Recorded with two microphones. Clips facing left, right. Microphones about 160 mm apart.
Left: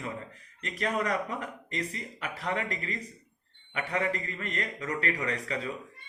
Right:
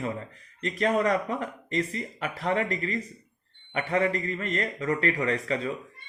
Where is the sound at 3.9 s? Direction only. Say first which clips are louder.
Right 6 dB; 40° right (ahead or behind).